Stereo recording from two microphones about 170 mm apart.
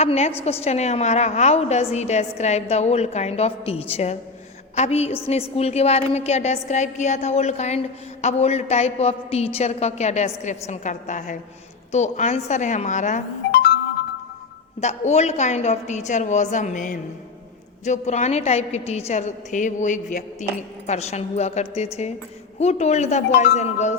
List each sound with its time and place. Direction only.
0.0 s a woman's voice: 40° left (ahead or behind)
13.5 s music: 65° left (ahead or behind)
14.8 s a woman's voice: 40° left (ahead or behind)